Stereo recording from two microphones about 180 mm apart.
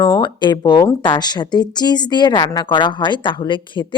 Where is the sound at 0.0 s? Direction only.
20° left (ahead or behind).